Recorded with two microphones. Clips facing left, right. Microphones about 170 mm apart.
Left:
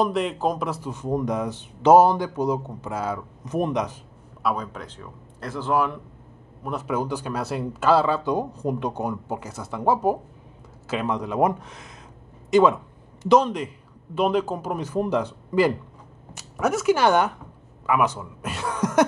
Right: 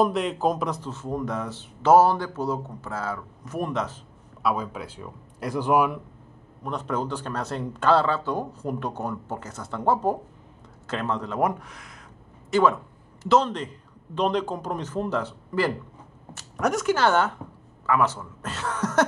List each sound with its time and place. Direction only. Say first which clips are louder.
0.0 s a man's voice: even; centre (ahead or behind); by 4.0 s 15° left (ahead or behind)
4.4 s speech: even; centre (ahead or behind)
6.6 s a man's voice: left 2 dB; 5° left (ahead or behind)
16.3 s a man's voice: left 1 dB; 5° left (ahead or behind)